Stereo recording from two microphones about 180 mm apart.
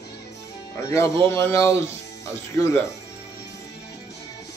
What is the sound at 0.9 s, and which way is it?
Speech, 15° left (ahead or behind).